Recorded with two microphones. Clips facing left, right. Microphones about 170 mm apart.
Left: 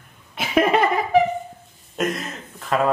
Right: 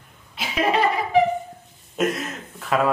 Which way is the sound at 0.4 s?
50° left (ahead or behind).